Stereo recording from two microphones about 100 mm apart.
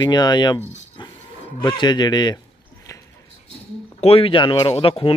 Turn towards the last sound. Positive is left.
turn(degrees=60)  # may be behind; listen again after turning